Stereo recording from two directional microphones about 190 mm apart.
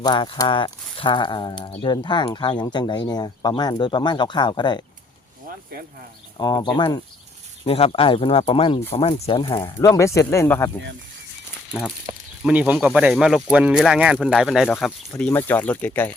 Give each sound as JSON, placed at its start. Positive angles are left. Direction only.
{"t": 0.0, "sound": "speech", "side_deg": 25}
{"t": 6.3, "sound": "speech", "side_deg": 25}
{"t": 12.4, "sound": "speech", "side_deg": -5}